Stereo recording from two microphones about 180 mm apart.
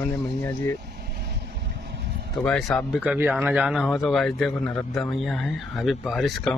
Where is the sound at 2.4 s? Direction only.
5° left (ahead or behind).